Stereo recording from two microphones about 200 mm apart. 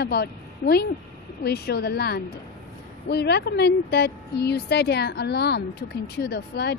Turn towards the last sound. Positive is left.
turn(degrees=55)  # may be behind; listen again after turning